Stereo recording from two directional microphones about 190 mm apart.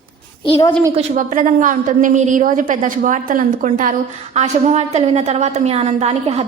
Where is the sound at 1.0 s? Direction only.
45° right (ahead or behind).